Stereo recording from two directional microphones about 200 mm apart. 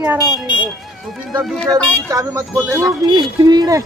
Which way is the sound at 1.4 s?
Centre (ahead or behind).